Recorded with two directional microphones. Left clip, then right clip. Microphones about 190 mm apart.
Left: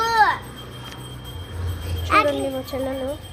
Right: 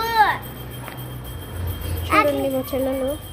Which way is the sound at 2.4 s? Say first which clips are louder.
Right 3 dB; 15° right (ahead or behind).